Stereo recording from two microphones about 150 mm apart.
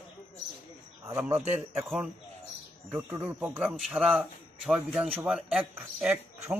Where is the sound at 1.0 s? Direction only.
15° right (ahead or behind).